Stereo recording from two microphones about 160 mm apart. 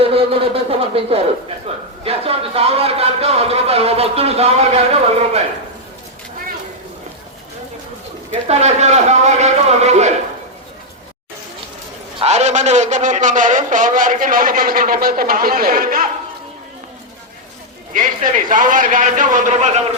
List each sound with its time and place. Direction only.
0.0 s speech: 35° right (ahead or behind)
2.0 s a sound: 35° right (ahead or behind)
8.3 s a man's voice: 45° right (ahead or behind)
12.2 s a man's voice: 45° right (ahead or behind); by 16.0 s 60° right (ahead or behind)
17.9 s a man's voice: 55° right (ahead or behind)